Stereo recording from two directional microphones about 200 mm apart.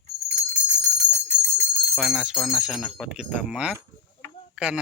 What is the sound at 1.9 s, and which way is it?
Speech, centre (ahead or behind).